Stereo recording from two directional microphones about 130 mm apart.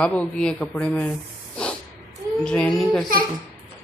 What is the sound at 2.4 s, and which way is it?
Speech, 5° left (ahead or behind).